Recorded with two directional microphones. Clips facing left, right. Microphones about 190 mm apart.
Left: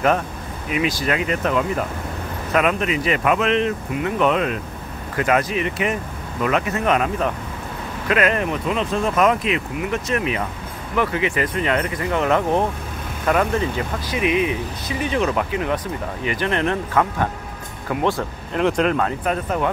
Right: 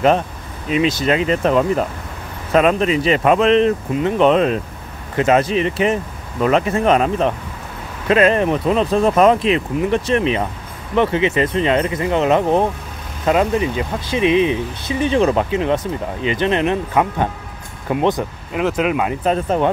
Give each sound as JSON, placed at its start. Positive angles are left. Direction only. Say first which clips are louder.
{"t": 0.7, "sound": "speech", "louder": "right 5 dB", "side_deg": -25}
{"t": 18.5, "sound": "speech", "louder": "even", "side_deg": -5}
{"t": 19.2, "sound": "speech", "louder": "right 5 dB", "side_deg": -25}